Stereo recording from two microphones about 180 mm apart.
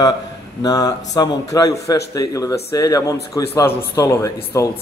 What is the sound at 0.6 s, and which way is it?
A man's voice, 20° left (ahead or behind).